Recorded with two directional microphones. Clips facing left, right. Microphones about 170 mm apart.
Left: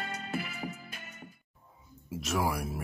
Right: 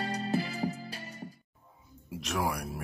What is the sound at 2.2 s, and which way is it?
Music, 5° left (ahead or behind).